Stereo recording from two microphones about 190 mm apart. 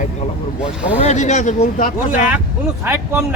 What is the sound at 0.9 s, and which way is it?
Speech, 40° left (ahead or behind).